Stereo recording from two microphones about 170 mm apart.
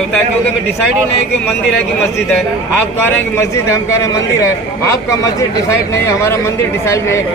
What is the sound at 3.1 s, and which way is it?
A man's voice, 15° left (ahead or behind).